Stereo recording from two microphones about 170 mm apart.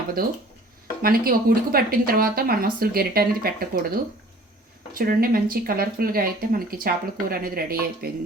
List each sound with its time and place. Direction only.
1.0 s speech: 60° right (ahead or behind)
4.9 s speech: 60° right (ahead or behind)